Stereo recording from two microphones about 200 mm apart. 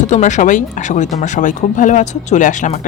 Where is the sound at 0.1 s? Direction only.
35° left (ahead or behind).